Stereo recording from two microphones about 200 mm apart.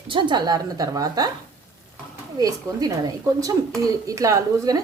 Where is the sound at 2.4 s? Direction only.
20° right (ahead or behind).